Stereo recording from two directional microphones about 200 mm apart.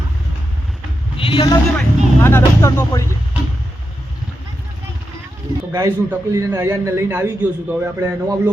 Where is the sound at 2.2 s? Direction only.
10° left (ahead or behind).